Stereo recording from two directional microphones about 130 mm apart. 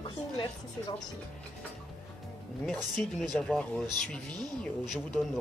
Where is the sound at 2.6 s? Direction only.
5° left (ahead or behind).